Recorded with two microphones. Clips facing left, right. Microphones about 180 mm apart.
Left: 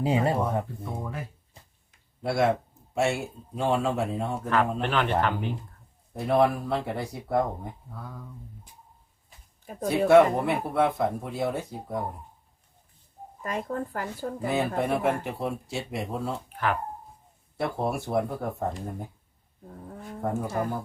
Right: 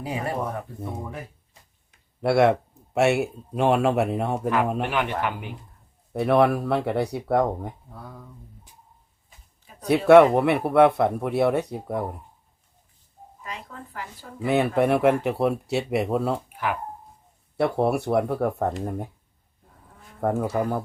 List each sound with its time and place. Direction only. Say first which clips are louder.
0.0 s speech: left 4 dB; 25° left (ahead or behind)
2.2 s speech: right 5 dB; 65° right (ahead or behind)
4.8 s speech: even; 10° right (ahead or behind)
6.1 s speech: right 3 dB; 70° right (ahead or behind)
10.1 s speech: right 5 dB; 65° right (ahead or behind)
13.4 s speech: left 8 dB; 50° left (ahead or behind)
14.4 s speech: right 6 dB; 65° right (ahead or behind)
16.5 s a sound: even; 10° right (ahead or behind)
17.6 s speech: right 6 dB; 65° right (ahead or behind)
20.2 s speech: right 5 dB; 60° right (ahead or behind)